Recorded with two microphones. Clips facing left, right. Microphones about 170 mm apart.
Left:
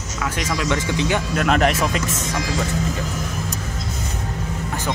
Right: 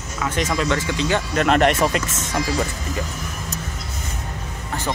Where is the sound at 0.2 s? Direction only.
5° left (ahead or behind).